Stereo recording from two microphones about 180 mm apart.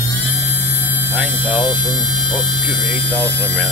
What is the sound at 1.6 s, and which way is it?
Speech, 25° left (ahead or behind).